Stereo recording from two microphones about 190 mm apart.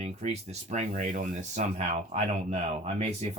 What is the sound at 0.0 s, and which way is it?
Speech, 35° right (ahead or behind).